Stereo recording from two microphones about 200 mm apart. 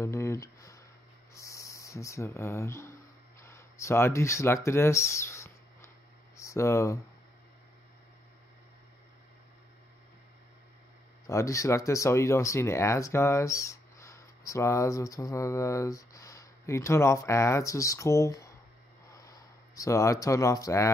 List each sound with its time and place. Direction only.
0.0 s a sound: 15° left (ahead or behind)
6.3 s speech: 15° left (ahead or behind)
11.2 s speech: 15° left (ahead or behind)